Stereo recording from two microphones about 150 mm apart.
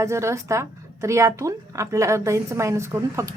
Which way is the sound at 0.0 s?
20° right (ahead or behind).